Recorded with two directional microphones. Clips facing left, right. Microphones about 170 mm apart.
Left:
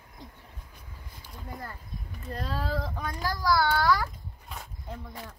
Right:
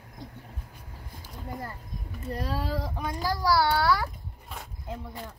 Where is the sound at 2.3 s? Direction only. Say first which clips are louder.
Right 1 dB; 15° right (ahead or behind).